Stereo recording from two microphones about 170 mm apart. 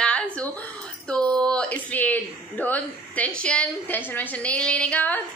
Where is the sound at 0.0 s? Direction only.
5° left (ahead or behind).